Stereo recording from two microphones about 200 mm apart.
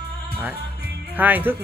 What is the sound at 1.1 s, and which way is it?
Speech, 10° right (ahead or behind).